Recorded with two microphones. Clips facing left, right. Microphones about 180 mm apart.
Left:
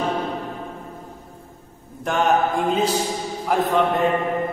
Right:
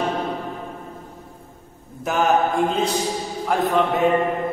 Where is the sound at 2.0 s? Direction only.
5° right (ahead or behind).